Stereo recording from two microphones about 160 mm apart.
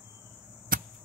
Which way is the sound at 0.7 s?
60° right (ahead or behind).